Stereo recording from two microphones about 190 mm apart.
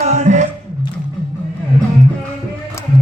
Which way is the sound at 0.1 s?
40° right (ahead or behind).